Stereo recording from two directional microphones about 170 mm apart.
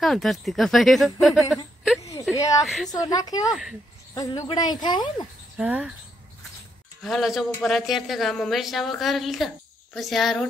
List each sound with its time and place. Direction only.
0.0 s speech: centre (ahead or behind)
2.3 s a woman's voice: 20° left (ahead or behind)
2.6 s speech: centre (ahead or behind)
2.9 s speech: 20° left (ahead or behind)
3.4 s speech: 5° right (ahead or behind)
4.1 s speech: 20° left (ahead or behind)
5.6 s speech: 10° right (ahead or behind)
7.0 s speech: centre (ahead or behind)